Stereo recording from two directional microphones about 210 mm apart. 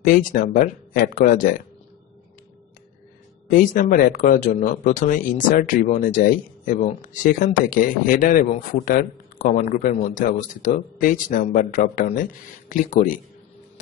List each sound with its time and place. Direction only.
0.0 s speech: 40° left (ahead or behind)
3.4 s speech: 40° left (ahead or behind)